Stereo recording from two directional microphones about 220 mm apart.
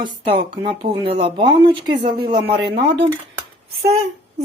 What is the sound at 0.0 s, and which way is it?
Speech, 20° right (ahead or behind).